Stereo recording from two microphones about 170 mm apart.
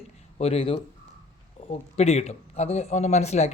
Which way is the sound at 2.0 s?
40° left (ahead or behind).